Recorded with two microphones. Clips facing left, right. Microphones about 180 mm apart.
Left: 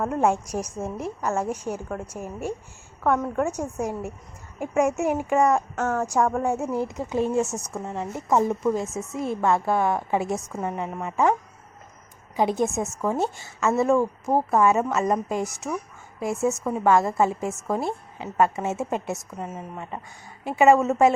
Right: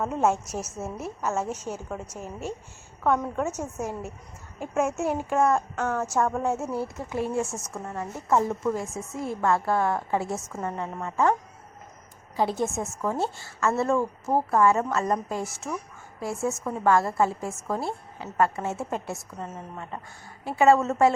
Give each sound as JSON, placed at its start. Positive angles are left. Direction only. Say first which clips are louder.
{"t": 0.2, "sound": "a woman's voice", "louder": "left 1 dB", "side_deg": 15}
{"t": 3.5, "sound": "a woman's voice", "louder": "left 3 dB", "side_deg": 15}
{"t": 5.7, "sound": "a woman's voice", "louder": "left 2 dB", "side_deg": 5}
{"t": 12.4, "sound": "a woman's voice", "louder": "left 3 dB", "side_deg": 15}